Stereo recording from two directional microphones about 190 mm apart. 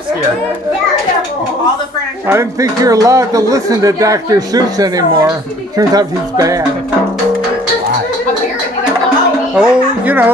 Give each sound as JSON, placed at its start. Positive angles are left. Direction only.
{"t": 2.2, "sound": "a man's voice", "side_deg": -15}
{"t": 9.6, "sound": "a man's voice", "side_deg": -5}